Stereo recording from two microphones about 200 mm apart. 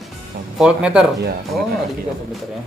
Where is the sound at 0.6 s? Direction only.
5° right (ahead or behind).